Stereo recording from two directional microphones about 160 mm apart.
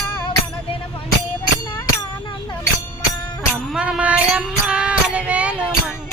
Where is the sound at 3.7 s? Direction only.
5° right (ahead or behind).